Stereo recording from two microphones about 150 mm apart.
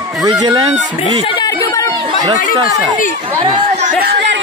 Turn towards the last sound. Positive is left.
turn(degrees=-40)  # may be behind; listen again after turning